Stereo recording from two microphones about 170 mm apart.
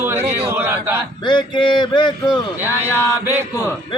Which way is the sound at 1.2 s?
25° left (ahead or behind).